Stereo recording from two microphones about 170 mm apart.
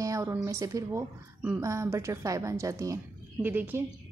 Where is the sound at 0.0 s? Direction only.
20° right (ahead or behind).